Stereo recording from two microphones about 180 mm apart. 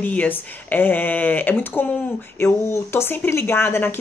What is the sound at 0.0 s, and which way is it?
Speech, 10° left (ahead or behind).